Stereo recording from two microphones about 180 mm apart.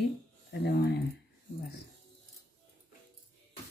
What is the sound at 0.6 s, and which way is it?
Speech, 65° left (ahead or behind).